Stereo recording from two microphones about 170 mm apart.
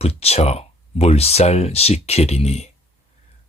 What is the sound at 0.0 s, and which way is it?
Speech, 35° left (ahead or behind).